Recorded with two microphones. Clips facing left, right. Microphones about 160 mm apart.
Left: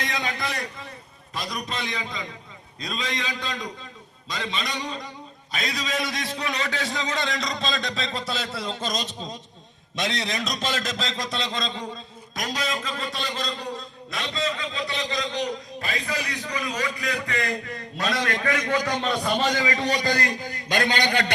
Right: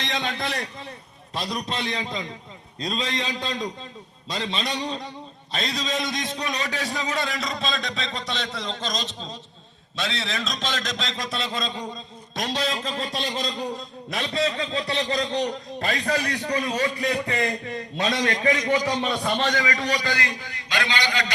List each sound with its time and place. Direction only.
0.0 s a sound: 25° right (ahead or behind)
1.4 s a man's voice: 30° right (ahead or behind); by 11.9 s 10° right (ahead or behind)
12.4 s a man's voice: 30° right (ahead or behind)
18.1 s a man's voice: 55° left (ahead or behind)
18.4 s a man's voice: 20° right (ahead or behind)
19.5 s a man's voice: 25° left (ahead or behind)
20.0 s a man's voice: 40° left (ahead or behind)